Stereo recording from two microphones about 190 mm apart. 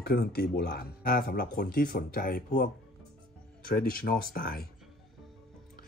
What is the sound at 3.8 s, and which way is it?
Speech, 50° left (ahead or behind).